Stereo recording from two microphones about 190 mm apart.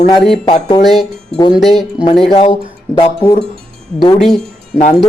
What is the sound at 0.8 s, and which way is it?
Speech, centre (ahead or behind).